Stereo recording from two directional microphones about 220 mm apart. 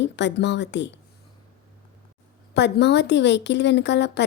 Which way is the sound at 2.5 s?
50° left (ahead or behind).